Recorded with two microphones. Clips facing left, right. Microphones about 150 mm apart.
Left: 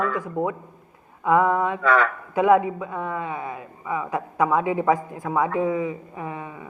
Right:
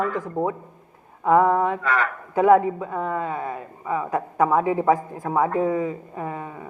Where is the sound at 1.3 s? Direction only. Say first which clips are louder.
Right 2 dB; 30° right (ahead or behind).